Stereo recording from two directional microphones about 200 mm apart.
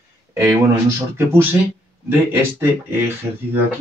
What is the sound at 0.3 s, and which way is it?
Speech, 15° right (ahead or behind).